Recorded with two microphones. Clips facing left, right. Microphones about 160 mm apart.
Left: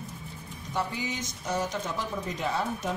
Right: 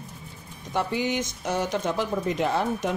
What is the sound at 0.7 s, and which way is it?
Speech, 65° right (ahead or behind).